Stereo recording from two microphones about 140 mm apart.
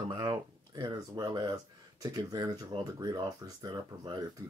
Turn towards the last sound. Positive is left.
turn(degrees=-30)  # may be behind; listen again after turning